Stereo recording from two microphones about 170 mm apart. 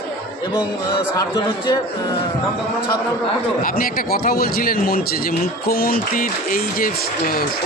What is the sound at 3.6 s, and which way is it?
Speech, 55° left (ahead or behind).